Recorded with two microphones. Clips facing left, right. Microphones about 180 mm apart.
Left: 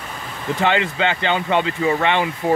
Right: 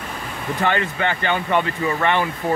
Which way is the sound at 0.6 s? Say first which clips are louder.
Left 2 dB; 15° left (ahead or behind).